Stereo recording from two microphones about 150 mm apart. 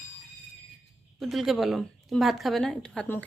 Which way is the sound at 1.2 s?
Centre (ahead or behind).